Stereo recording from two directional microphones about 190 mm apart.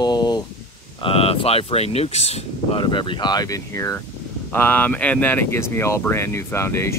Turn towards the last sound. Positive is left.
turn(degrees=15)  # may be behind; listen again after turning